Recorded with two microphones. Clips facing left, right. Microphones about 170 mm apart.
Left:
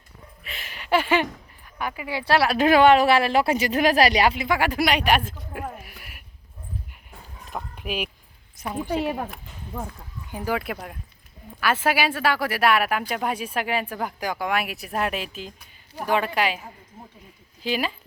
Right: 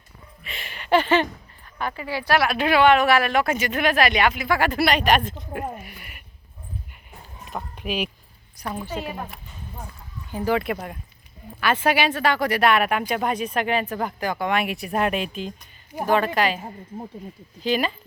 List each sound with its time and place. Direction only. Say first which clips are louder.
0.4 s a sound: right 2 dB; centre (ahead or behind)
1.8 s speech: right 1 dB; 10° left (ahead or behind); by 4.4 s 30° left (ahead or behind)
4.4 s speech: right 1 dB; 10° left (ahead or behind)
7.5 s speech: right 2 dB; 5° left (ahead or behind)
8.6 s a woman's voice: right 1 dB; 25° left (ahead or behind)
10.3 s speech: right 4 dB; 10° left (ahead or behind)
17.6 s speech: right 3 dB; 10° left (ahead or behind)